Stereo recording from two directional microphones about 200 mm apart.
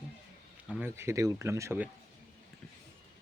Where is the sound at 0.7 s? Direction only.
10° right (ahead or behind).